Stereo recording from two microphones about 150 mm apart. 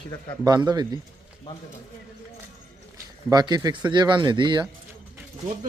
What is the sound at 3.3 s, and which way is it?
Speech, 25° right (ahead or behind).